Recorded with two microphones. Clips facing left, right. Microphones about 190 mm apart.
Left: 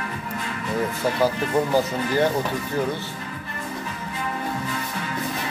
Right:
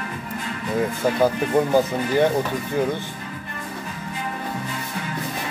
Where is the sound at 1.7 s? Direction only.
20° right (ahead or behind).